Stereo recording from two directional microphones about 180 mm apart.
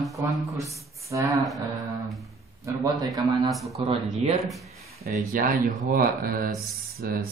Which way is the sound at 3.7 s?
35° right (ahead or behind).